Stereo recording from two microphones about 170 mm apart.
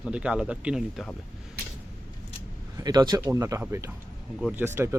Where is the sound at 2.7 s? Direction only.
25° right (ahead or behind).